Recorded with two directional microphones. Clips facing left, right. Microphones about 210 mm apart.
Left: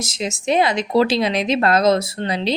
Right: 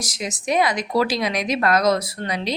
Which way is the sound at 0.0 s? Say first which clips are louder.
Left 4 dB; 25° left (ahead or behind).